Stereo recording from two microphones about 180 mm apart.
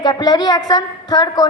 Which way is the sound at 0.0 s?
20° left (ahead or behind).